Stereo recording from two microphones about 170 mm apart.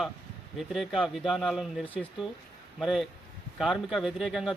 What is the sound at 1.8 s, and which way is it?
Speech, 10° left (ahead or behind).